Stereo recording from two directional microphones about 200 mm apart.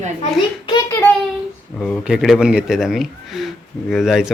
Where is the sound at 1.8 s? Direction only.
Centre (ahead or behind).